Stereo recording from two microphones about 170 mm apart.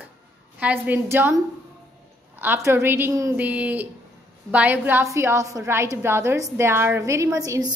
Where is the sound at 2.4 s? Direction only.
15° right (ahead or behind).